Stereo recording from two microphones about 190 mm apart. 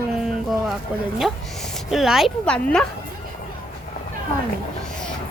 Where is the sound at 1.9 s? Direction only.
Centre (ahead or behind).